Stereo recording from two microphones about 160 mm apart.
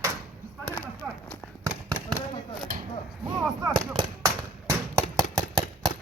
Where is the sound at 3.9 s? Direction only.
20° right (ahead or behind).